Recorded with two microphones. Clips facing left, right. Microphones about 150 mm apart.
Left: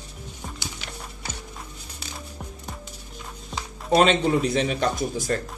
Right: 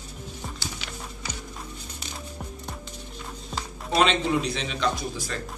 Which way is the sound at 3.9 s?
50° left (ahead or behind).